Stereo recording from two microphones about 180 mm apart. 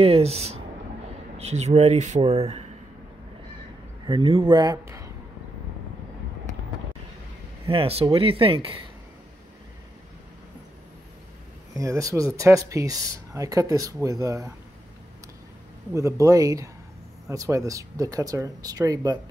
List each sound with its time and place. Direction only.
0.0 s speech: 35° right (ahead or behind)
4.1 s a man's voice: 30° right (ahead or behind)
7.6 s speech: 30° right (ahead or behind)
11.7 s speech: 20° right (ahead or behind)
15.9 s speech: 15° right (ahead or behind)